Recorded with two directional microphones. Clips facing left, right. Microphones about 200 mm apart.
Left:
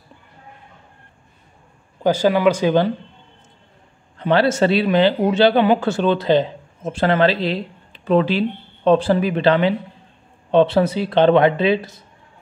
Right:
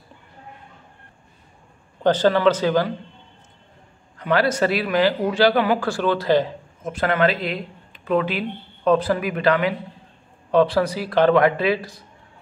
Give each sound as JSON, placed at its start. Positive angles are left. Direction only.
{"t": 2.0, "sound": "speech", "side_deg": 10}
{"t": 4.2, "sound": "speech", "side_deg": 25}